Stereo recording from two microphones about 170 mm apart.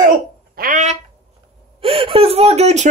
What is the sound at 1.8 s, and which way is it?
Whimper, 30° right (ahead or behind).